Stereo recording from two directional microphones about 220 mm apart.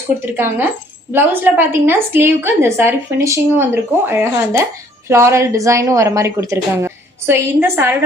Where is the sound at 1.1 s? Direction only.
10° right (ahead or behind).